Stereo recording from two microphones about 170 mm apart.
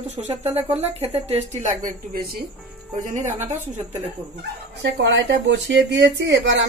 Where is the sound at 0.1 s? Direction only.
40° right (ahead or behind).